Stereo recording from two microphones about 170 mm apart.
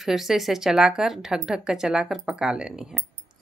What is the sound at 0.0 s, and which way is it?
Speech, centre (ahead or behind).